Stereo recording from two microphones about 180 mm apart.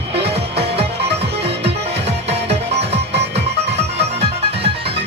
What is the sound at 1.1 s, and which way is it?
Music, 35° right (ahead or behind).